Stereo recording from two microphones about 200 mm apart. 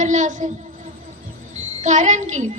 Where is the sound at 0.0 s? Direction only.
40° right (ahead or behind).